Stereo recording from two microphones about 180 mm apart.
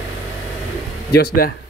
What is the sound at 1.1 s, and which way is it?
Speech, 60° left (ahead or behind).